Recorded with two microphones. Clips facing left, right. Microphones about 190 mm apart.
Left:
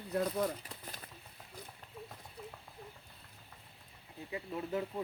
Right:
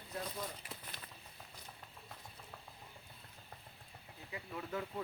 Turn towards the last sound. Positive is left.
turn(degrees=25)  # may be behind; listen again after turning